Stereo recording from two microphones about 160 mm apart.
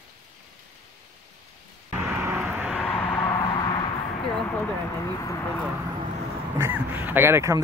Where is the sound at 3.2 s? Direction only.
25° left (ahead or behind).